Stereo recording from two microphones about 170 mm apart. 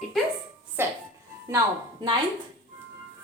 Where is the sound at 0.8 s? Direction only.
15° right (ahead or behind).